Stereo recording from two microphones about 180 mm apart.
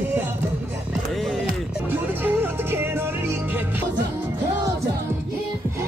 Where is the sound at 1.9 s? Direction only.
10° right (ahead or behind).